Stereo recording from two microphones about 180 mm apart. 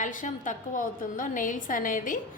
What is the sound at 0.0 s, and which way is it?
A woman's voice, 45° left (ahead or behind).